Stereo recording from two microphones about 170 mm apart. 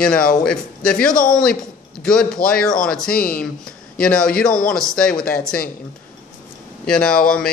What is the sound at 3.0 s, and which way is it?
Speech, 60° left (ahead or behind).